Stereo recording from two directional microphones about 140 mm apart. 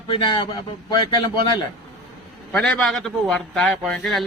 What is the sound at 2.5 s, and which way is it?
A man's voice, 10° left (ahead or behind).